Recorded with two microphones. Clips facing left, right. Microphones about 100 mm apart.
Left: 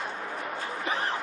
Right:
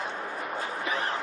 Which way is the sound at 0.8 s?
30° left (ahead or behind).